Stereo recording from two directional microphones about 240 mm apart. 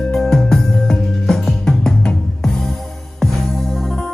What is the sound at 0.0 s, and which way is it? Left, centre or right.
Music, centre.